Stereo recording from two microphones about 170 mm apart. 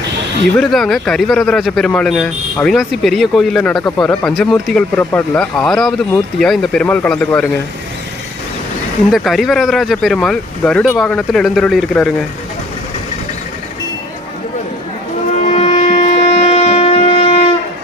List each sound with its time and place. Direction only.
0.5 s speech: centre (ahead or behind)
9.1 s speech: centre (ahead or behind)
15.4 s wind instrument: 45° left (ahead or behind)